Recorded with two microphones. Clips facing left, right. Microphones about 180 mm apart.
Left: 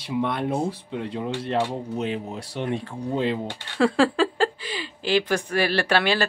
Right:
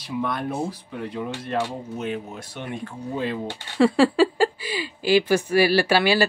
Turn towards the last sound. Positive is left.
turn(degrees=-5)  # may be behind; listen again after turning